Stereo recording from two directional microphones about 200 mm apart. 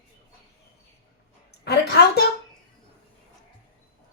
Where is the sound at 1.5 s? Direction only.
55° left (ahead or behind).